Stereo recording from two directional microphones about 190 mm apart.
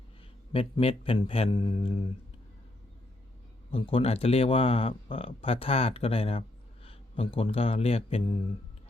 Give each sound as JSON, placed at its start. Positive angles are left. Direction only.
{"t": 0.5, "sound": "speech", "side_deg": 30}
{"t": 3.7, "sound": "speech", "side_deg": 30}